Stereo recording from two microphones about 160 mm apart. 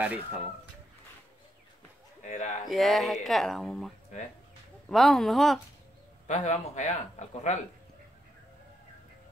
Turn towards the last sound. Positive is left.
turn(degrees=45)  # may be behind; listen again after turning